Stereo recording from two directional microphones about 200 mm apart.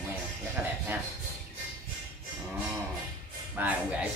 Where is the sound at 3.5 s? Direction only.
10° right (ahead or behind).